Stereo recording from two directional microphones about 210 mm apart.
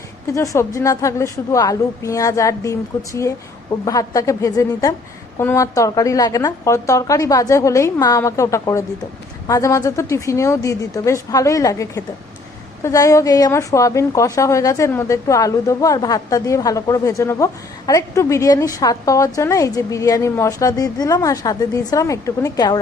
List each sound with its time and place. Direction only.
0.3 s a woman's voice: 15° left (ahead or behind)